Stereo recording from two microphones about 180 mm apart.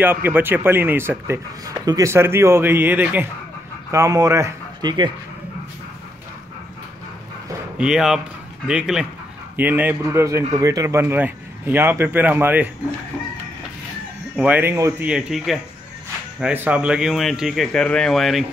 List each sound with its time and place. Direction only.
0.0 s speech: 10° right (ahead or behind)
7.7 s speech: 5° right (ahead or behind)
14.3 s speech: 10° right (ahead or behind)
15.0 s speech: 5° right (ahead or behind)